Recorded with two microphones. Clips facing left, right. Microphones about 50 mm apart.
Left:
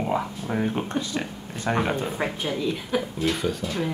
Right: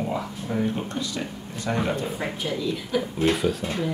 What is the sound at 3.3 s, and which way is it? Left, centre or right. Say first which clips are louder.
Speech: right 3 dB; centre.